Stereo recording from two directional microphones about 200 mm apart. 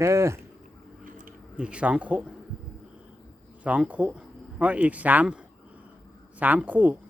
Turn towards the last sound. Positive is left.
turn(degrees=-10)  # may be behind; listen again after turning